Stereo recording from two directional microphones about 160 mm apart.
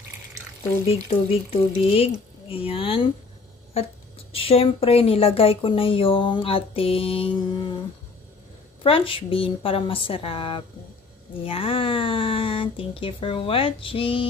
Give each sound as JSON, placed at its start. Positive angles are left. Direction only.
{"t": 0.8, "sound": "speech", "side_deg": 40}
{"t": 8.8, "sound": "speech", "side_deg": 35}